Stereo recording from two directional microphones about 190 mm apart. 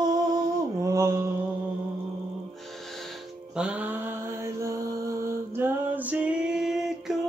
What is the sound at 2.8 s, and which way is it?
Music, centre (ahead or behind).